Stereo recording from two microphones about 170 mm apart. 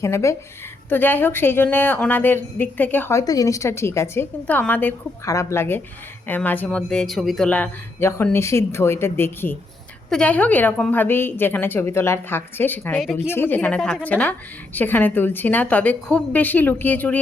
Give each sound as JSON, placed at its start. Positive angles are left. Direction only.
{"t": 0.0, "sound": "a woman's voice", "side_deg": 15}